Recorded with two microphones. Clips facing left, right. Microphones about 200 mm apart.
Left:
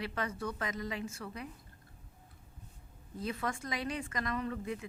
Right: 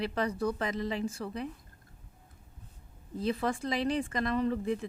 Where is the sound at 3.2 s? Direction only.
30° right (ahead or behind).